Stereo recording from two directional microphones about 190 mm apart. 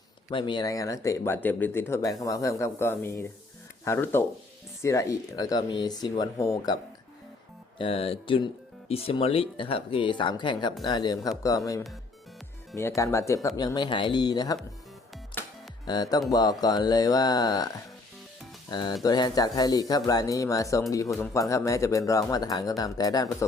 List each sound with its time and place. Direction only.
0.3 s speech: 25° left (ahead or behind)
7.8 s speech: 30° left (ahead or behind)
13.0 s speech: 15° left (ahead or behind)
15.9 s speech: 20° left (ahead or behind)
18.7 s speech: 25° left (ahead or behind)